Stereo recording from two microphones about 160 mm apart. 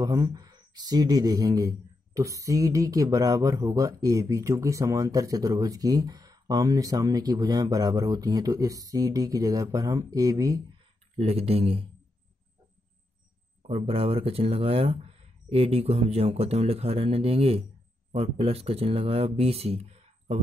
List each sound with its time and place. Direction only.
0.0 s speech: 25° right (ahead or behind)
11.1 s speech: 40° right (ahead or behind)
13.6 s speech: 40° right (ahead or behind)